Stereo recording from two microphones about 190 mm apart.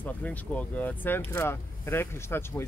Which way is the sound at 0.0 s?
10° left (ahead or behind).